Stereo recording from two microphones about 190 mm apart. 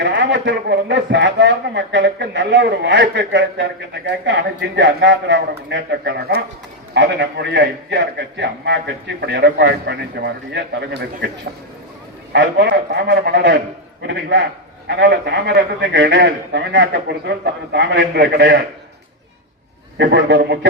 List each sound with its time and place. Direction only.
0.0 s a man's voice: 70° right (ahead or behind)
12.3 s a man's voice: 65° right (ahead or behind)
20.0 s a man's voice: 65° right (ahead or behind)